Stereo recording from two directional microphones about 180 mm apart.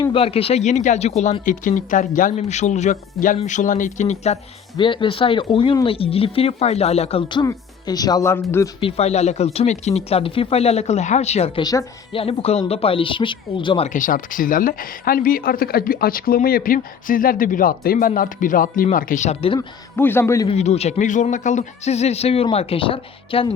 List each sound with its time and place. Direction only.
0.0 s speech: 30° left (ahead or behind)
4.8 s speech: 25° left (ahead or behind)
8.8 s speech: 35° left (ahead or behind)
11.6 s speech: 20° left (ahead or behind)
12.2 s speech: 35° left (ahead or behind)
13.9 s speech: 50° left (ahead or behind)
19.5 s a man's voice: 10° left (ahead or behind)
20.5 s speech: 35° left (ahead or behind)